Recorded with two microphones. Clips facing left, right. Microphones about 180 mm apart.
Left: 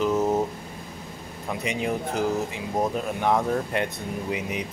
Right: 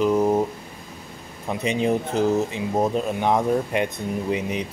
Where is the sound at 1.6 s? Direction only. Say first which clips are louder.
Right 6 dB; 25° right (ahead or behind).